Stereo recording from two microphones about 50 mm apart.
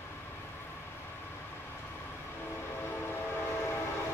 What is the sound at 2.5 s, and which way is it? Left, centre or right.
Train, left.